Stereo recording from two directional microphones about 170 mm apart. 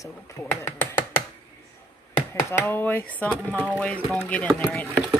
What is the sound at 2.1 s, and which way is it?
Speech, 10° left (ahead or behind).